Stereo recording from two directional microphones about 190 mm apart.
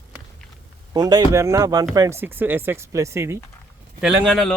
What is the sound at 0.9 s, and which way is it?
Speech, 20° right (ahead or behind).